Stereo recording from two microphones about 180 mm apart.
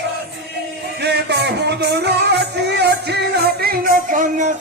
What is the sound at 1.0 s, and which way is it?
Music, 70° right (ahead or behind).